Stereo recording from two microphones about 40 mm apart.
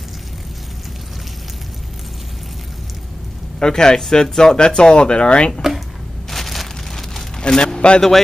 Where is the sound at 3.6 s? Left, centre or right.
Centre.